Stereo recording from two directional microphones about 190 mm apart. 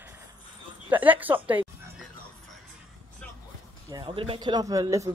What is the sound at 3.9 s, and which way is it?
Speech, 25° right (ahead or behind).